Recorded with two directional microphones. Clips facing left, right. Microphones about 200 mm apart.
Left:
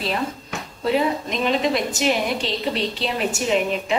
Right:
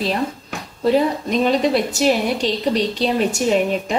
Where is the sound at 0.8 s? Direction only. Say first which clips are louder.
Right 4 dB; 40° right (ahead or behind).